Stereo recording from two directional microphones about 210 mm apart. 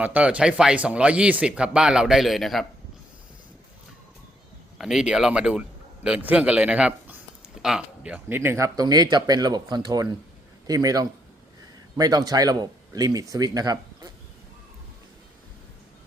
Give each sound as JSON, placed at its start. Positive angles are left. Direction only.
{"t": 0.0, "sound": "speech", "side_deg": -5}
{"t": 4.8, "sound": "a man's voice", "side_deg": 0}